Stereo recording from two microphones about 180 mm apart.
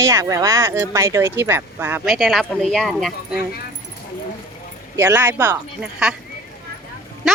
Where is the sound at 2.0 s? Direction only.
Centre (ahead or behind).